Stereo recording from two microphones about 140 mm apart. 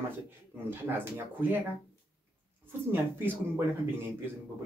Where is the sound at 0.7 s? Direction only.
15° right (ahead or behind).